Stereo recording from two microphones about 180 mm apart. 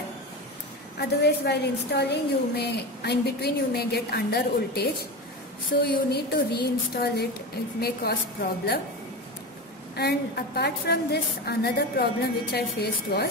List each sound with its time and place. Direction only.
0.9 s a woman's voice: 65° left (ahead or behind)
9.9 s a woman's voice: 60° left (ahead or behind)